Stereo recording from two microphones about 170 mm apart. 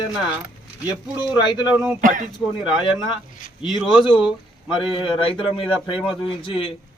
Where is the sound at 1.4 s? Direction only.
25° left (ahead or behind).